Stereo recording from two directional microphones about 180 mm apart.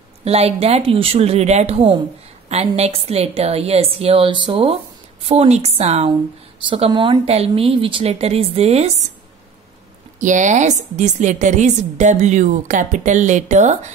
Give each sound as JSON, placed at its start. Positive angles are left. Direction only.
{"t": 0.2, "sound": "a woman's voice", "side_deg": -35}
{"t": 10.2, "sound": "a woman's voice", "side_deg": -45}